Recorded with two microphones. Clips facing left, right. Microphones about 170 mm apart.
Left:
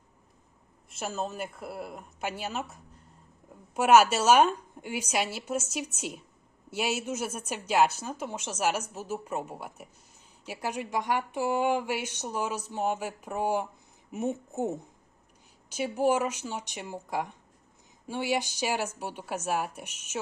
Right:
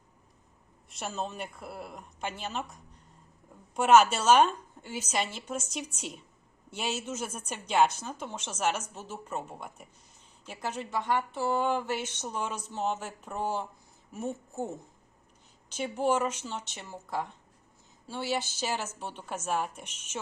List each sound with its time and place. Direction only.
0.9 s a woman's voice: centre (ahead or behind)
3.8 s a woman's voice: 10° left (ahead or behind)